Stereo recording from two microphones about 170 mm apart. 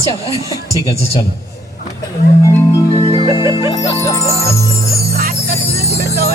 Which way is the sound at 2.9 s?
35° left (ahead or behind).